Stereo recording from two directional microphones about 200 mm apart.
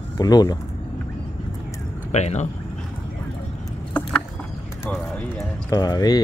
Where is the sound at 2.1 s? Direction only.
35° left (ahead or behind).